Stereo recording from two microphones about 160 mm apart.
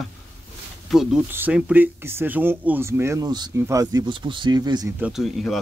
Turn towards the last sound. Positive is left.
turn(degrees=0)  # may be behind; listen again after turning